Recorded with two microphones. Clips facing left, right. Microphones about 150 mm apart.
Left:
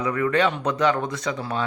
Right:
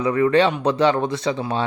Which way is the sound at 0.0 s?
25° right (ahead or behind).